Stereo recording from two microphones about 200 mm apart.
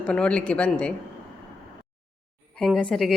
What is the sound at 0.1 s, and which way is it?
Speech, 5° left (ahead or behind).